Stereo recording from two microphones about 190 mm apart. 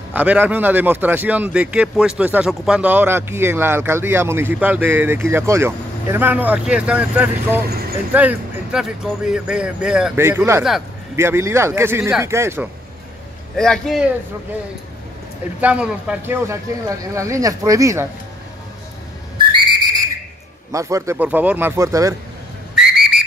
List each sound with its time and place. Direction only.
0.1 s a man's voice: 10° right (ahead or behind)
13.6 s speech: centre (ahead or behind)
15.6 s a man's voice: 5° right (ahead or behind)
19.3 s whistle: 25° right (ahead or behind)
20.7 s a man's voice: 15° right (ahead or behind)
22.8 s whistle: 5° right (ahead or behind)